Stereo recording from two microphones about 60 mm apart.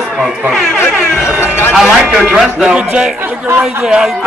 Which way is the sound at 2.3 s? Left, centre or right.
Centre.